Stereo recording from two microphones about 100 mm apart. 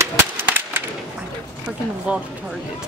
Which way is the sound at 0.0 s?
30° right (ahead or behind).